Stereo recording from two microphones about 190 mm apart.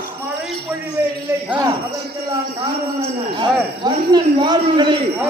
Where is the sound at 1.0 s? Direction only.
10° right (ahead or behind).